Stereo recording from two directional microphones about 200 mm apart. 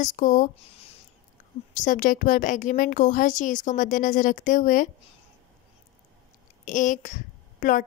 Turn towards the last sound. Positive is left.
turn(degrees=40)  # may be behind; listen again after turning